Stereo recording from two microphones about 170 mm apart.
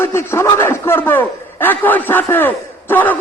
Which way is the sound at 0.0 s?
15° left (ahead or behind).